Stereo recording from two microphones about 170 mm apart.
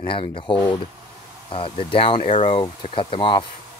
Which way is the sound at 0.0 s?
35° left (ahead or behind).